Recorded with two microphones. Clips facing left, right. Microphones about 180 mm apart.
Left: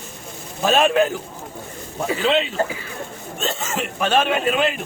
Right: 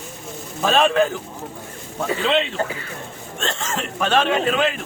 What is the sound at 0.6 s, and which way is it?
Speech, 5° left (ahead or behind).